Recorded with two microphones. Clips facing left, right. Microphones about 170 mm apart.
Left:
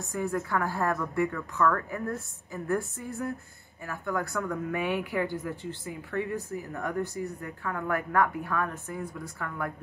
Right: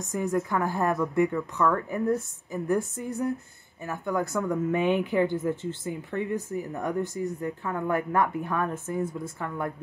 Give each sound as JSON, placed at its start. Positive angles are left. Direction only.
{"t": 0.0, "sound": "a woman's voice", "side_deg": -20}